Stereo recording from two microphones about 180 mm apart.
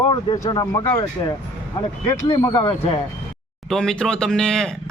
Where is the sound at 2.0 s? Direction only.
20° left (ahead or behind).